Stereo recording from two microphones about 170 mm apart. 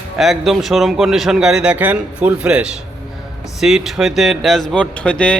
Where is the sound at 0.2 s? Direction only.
Centre (ahead or behind).